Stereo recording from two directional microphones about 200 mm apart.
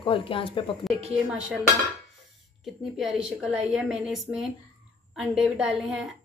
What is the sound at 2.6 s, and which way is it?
A woman's voice, centre (ahead or behind).